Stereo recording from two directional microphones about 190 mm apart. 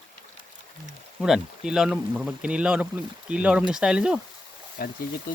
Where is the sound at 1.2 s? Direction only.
5° right (ahead or behind).